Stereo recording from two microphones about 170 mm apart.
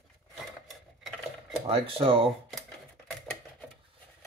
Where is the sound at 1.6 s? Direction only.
35° right (ahead or behind).